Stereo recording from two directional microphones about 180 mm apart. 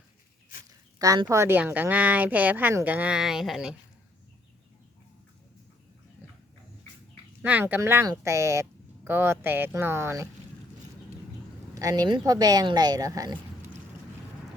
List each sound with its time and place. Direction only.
0.9 s a woman's voice: 20° right (ahead or behind); by 3.8 s centre (ahead or behind)
7.4 s a woman's voice: 10° right (ahead or behind)
11.7 s a woman's voice: 20° right (ahead or behind)